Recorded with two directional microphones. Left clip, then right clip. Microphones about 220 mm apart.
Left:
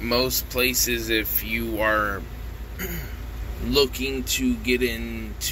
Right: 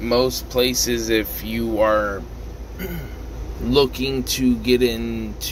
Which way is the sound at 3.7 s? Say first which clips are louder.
Right 4 dB; 15° right (ahead or behind).